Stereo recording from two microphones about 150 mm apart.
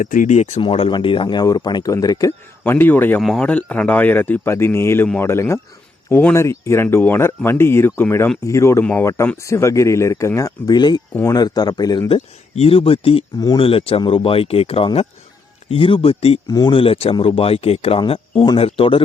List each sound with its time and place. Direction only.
0.0 s speech: 60° left (ahead or behind)
0.6 s speech: 35° left (ahead or behind); by 3.2 s 15° left (ahead or behind)
3.2 s speech: centre (ahead or behind); by 12.0 s 25° left (ahead or behind)
12.0 s speech: 40° left (ahead or behind)
13.3 s speech: 25° left (ahead or behind)
13.6 s speech: 40° left (ahead or behind)
16.5 s speech: 30° left (ahead or behind)